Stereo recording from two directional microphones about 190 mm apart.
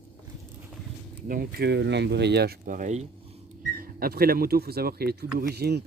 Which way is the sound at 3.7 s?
50° right (ahead or behind).